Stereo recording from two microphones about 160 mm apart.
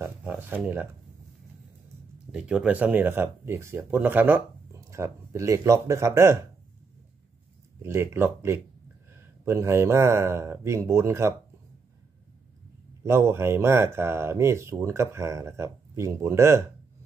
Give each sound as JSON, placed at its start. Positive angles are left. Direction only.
{"t": 0.0, "sound": "a sound", "side_deg": -10}
{"t": 2.3, "sound": "speech", "side_deg": -5}
{"t": 7.8, "sound": "speech", "side_deg": -15}
{"t": 13.0, "sound": "speech", "side_deg": -15}